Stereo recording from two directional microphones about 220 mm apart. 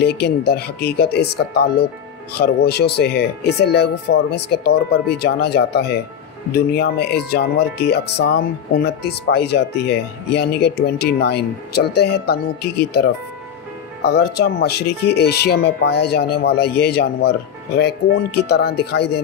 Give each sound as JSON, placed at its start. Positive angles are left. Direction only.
{"t": 0.0, "sound": "speech", "side_deg": 50}